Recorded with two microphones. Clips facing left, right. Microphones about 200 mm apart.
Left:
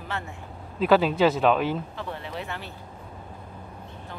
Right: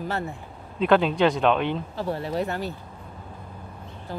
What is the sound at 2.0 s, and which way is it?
Speech, 40° right (ahead or behind).